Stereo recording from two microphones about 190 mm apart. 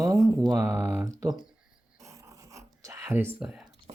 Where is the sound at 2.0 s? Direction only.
15° right (ahead or behind).